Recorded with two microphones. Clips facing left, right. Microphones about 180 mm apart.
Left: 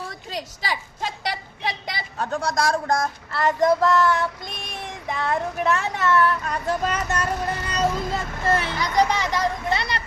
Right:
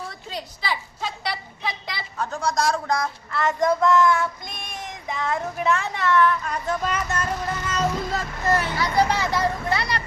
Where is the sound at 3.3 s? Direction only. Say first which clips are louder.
Left 2 dB; 35° left (ahead or behind).